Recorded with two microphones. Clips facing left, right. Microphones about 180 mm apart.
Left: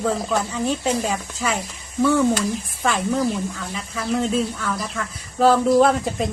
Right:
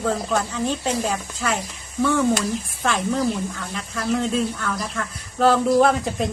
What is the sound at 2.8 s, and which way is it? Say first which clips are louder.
Speech: left 1 dB; 5° left (ahead or behind).